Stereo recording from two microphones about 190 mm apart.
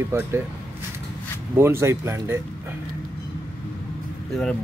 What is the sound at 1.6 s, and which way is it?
Speech, 15° right (ahead or behind).